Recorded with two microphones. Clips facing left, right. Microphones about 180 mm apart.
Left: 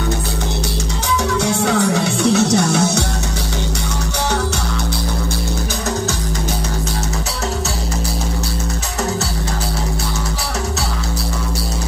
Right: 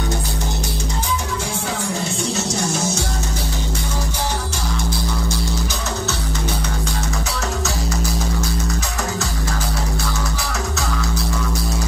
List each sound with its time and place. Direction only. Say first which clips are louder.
1.4 s music: left 9 dB; 75° left (ahead or behind)